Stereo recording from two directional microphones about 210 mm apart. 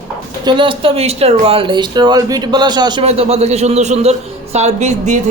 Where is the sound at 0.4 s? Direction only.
25° right (ahead or behind).